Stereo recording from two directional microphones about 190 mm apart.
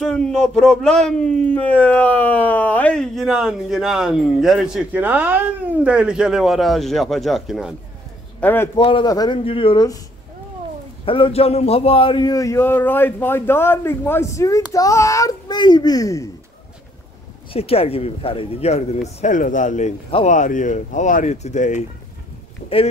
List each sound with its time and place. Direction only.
0.0 s speech: 5° left (ahead or behind)
8.4 s a man's voice: 10° left (ahead or behind)
8.7 s speech: 25° left (ahead or behind)
11.1 s a man's voice: 30° left (ahead or behind)
17.5 s speech: 30° left (ahead or behind)